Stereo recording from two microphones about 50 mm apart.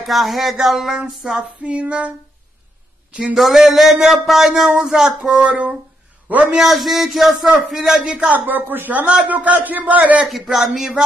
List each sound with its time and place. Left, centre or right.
0.0 s speech: centre
1.6 s female singing: right
3.1 s speech: right
3.3 s a man's voice: centre; by 6.6 s right
6.6 s speech: centre
8.1 s female singing: right
8.5 s a man's voice: right
9.0 s a man's voice: right
10.4 s speech: centre